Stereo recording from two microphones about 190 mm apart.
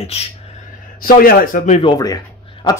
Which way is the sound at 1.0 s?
45° left (ahead or behind).